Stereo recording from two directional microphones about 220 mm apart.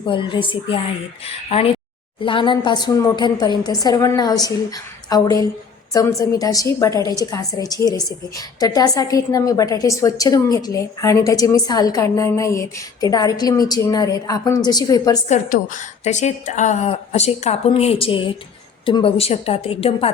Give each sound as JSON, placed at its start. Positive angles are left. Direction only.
{"t": 0.0, "sound": "a woman's voice", "side_deg": 20}
{"t": 15.3, "sound": "a woman's voice", "side_deg": 35}